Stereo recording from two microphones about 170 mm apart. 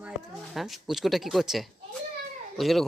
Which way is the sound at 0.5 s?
Centre (ahead or behind).